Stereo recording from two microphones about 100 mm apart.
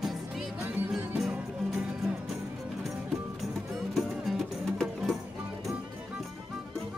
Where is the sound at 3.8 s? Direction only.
Centre (ahead or behind).